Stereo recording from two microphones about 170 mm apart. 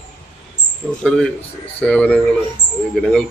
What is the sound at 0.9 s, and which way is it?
A man's voice, centre (ahead or behind).